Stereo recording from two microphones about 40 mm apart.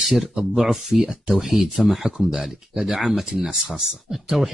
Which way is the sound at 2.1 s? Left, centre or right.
Right.